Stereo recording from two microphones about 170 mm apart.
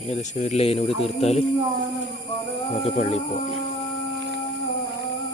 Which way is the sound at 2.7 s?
40° left (ahead or behind).